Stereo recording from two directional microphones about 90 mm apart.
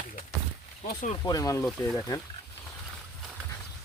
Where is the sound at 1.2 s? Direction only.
40° left (ahead or behind).